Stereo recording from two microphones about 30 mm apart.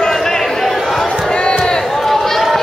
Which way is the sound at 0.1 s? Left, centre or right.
Centre.